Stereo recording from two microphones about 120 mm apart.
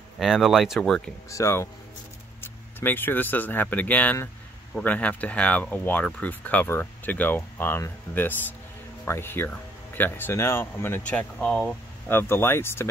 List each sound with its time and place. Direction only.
0.2 s speech: centre (ahead or behind)
1.3 s speech: 20° left (ahead or behind)